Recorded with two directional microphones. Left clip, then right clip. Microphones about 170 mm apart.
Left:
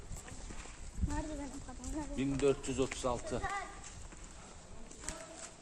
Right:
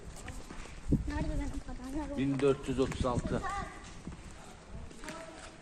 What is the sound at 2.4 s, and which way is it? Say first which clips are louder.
Speech: right 2 dB; centre (ahead or behind).